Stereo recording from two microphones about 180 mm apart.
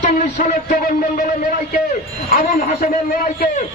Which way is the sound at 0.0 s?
45° left (ahead or behind).